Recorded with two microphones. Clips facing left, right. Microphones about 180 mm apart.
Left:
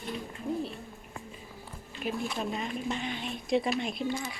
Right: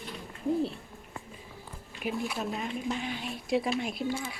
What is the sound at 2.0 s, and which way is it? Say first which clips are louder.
Speech: even; 10° right (ahead or behind).